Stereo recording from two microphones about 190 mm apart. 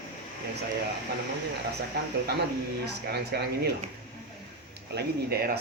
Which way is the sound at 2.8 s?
60° right (ahead or behind).